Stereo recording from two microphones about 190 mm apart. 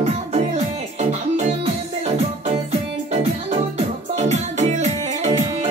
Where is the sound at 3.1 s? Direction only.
30° right (ahead or behind).